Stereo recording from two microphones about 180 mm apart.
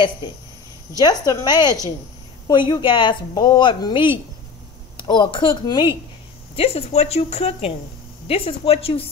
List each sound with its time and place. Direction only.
0.9 s speech: 20° left (ahead or behind)